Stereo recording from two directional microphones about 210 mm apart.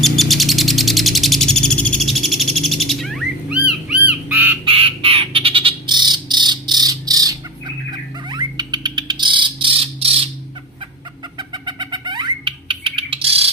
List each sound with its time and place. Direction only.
0.0 s bird: centre (ahead or behind)
4.6 s squawk: 25° right (ahead or behind)
8.3 s a sound: 20° right (ahead or behind)
11.3 s bird: 20° right (ahead or behind)